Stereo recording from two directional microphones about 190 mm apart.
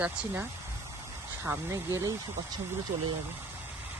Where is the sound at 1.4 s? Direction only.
15° right (ahead or behind).